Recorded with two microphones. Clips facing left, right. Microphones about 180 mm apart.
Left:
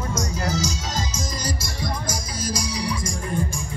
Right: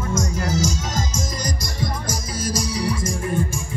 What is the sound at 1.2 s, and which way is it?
Music, 20° right (ahead or behind).